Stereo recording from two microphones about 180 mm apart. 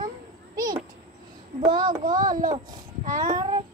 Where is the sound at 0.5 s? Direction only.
20° right (ahead or behind).